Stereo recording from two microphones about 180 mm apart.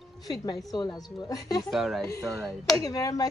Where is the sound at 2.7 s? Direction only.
20° left (ahead or behind).